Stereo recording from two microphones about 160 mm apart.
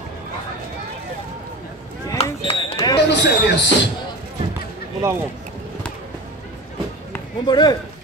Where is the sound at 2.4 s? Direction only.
35° left (ahead or behind).